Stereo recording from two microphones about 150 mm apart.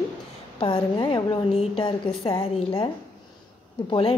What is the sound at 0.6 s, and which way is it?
Speech, 30° left (ahead or behind).